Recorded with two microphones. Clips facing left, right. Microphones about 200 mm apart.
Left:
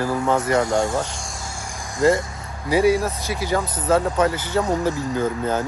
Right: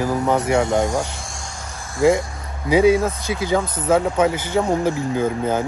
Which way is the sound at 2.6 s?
20° right (ahead or behind).